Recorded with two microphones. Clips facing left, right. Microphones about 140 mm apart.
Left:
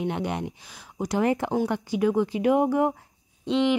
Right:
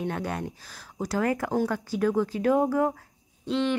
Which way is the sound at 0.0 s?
20° left (ahead or behind).